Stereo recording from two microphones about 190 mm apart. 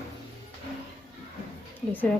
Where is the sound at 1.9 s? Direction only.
10° left (ahead or behind).